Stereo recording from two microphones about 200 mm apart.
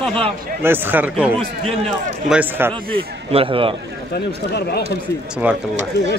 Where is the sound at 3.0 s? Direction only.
25° right (ahead or behind).